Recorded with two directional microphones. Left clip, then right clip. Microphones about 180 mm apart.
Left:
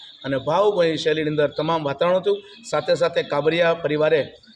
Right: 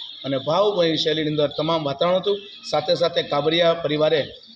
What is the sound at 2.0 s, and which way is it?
A man's voice, 5° left (ahead or behind).